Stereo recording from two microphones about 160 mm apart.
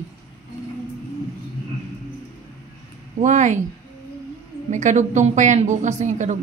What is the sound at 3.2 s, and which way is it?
Speech, 50° right (ahead or behind).